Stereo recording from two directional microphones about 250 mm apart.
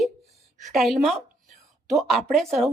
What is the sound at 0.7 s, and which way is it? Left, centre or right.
Speech, centre.